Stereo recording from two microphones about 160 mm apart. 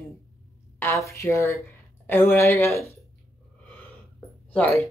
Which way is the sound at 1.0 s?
15° left (ahead or behind).